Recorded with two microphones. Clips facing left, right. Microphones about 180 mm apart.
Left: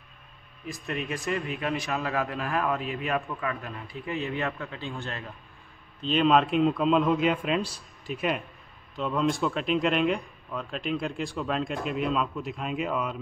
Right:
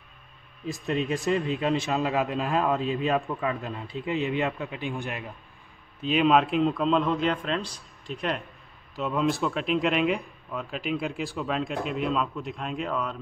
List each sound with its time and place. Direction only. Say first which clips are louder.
0.7 s a man's voice: right 5 dB; 25° right (ahead or behind); by 13.2 s 10° left (ahead or behind)